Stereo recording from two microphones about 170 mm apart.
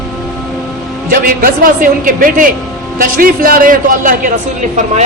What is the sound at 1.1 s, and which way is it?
A man's voice, 60° right (ahead or behind).